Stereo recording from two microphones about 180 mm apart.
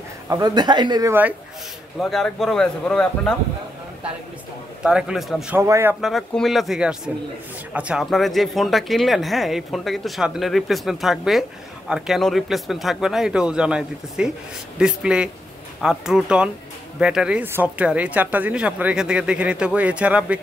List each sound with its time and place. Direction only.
0.3 s speech: 20° right (ahead or behind)
2.0 s speech: centre (ahead or behind)
4.8 s speech: 5° right (ahead or behind)
5.6 s speech: 15° right (ahead or behind)
5.9 s speech: centre (ahead or behind)